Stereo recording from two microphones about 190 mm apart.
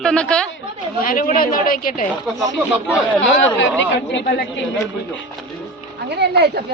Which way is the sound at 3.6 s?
70° left (ahead or behind).